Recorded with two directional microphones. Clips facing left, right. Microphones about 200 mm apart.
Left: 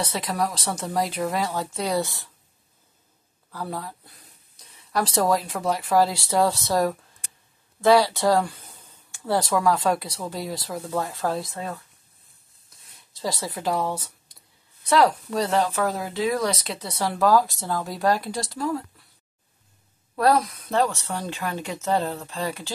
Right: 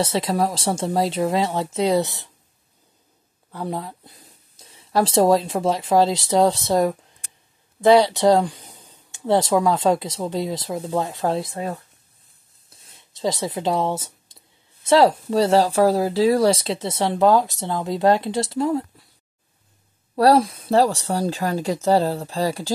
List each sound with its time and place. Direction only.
0.0 s speech: 25° right (ahead or behind)
3.5 s speech: 20° right (ahead or behind)
20.2 s speech: 30° right (ahead or behind)